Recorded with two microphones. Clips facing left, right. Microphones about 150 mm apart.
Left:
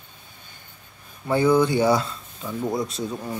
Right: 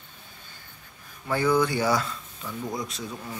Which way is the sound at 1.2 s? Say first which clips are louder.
Left 5 dB; 25° left (ahead or behind).